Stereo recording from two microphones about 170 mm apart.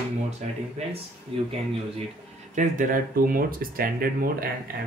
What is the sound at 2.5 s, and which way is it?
Speech, 50° right (ahead or behind).